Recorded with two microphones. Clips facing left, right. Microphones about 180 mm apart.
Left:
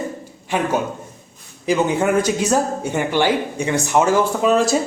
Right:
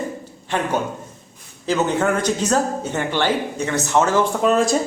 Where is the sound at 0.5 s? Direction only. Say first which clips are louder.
Left 2 dB; 10° left (ahead or behind).